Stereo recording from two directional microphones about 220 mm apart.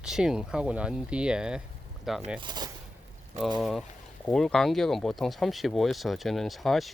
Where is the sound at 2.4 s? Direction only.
20° right (ahead or behind).